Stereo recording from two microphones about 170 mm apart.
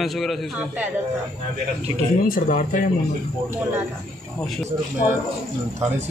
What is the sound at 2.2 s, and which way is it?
Speech, 55° left (ahead or behind).